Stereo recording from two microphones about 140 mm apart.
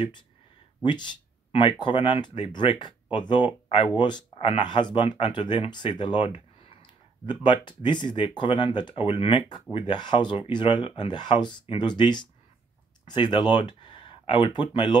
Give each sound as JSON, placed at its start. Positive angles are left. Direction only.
{"t": 1.5, "sound": "speech", "side_deg": 35}